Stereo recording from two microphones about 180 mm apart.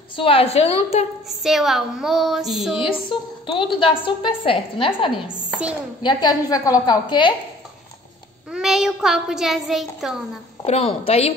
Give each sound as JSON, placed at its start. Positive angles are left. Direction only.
{"t": 0.1, "sound": "a woman's voice", "side_deg": 30}
{"t": 1.4, "sound": "child singing", "side_deg": 0}
{"t": 3.1, "sound": "a woman's voice", "side_deg": 30}
{"t": 5.3, "sound": "speech", "side_deg": -5}
{"t": 6.0, "sound": "a woman's voice", "side_deg": 20}
{"t": 8.5, "sound": "child singing", "side_deg": 0}
{"t": 10.6, "sound": "a woman's voice", "side_deg": 30}